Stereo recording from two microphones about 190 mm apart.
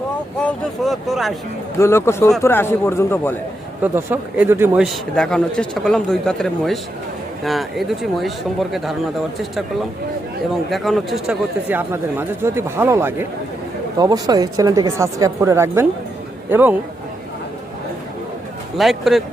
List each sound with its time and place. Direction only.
0.4 s a man's voice: centre (ahead or behind)
1.8 s a man's voice: 15° left (ahead or behind)
3.9 s a man's voice: 10° right (ahead or behind)
10.7 s speech: centre (ahead or behind)
18.8 s a man's voice: centre (ahead or behind)